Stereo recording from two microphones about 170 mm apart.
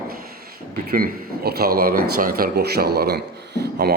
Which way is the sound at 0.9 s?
60° right (ahead or behind).